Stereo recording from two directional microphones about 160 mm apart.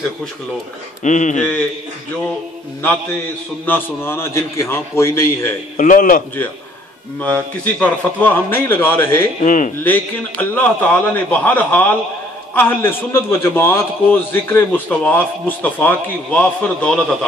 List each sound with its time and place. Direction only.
1.0 s speech: 50° left (ahead or behind)
2.8 s a man's voice: 15° left (ahead or behind)
5.8 s a man's voice: 55° left (ahead or behind)
7.2 s a man's voice: 10° left (ahead or behind)
9.4 s speech: 50° left (ahead or behind)
9.8 s a man's voice: 10° left (ahead or behind)